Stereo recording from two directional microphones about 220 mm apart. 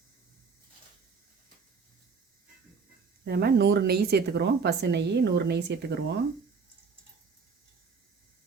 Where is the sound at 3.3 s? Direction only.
45° right (ahead or behind).